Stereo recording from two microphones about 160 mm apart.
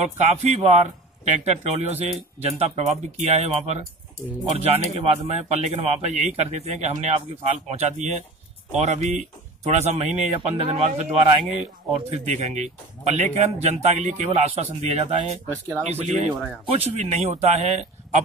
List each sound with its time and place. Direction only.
0.2 s a man's voice: 40° right (ahead or behind)